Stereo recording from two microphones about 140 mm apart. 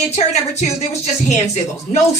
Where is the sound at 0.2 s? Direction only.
55° left (ahead or behind).